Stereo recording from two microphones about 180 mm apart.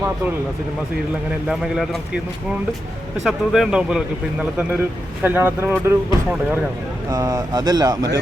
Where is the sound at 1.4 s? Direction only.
5° right (ahead or behind).